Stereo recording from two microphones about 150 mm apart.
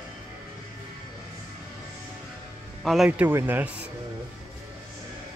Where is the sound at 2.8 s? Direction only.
Centre (ahead or behind).